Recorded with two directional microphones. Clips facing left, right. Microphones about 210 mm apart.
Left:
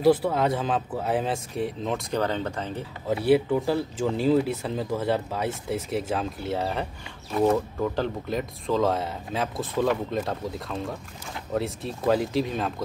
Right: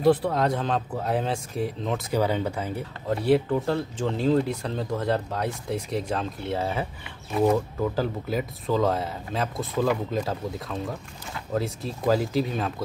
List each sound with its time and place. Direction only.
0.0 s speech: 5° left (ahead or behind)
3.1 s speech: 5° left (ahead or behind)